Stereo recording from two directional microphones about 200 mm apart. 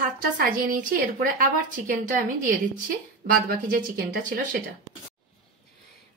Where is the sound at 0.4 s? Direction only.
45° right (ahead or behind).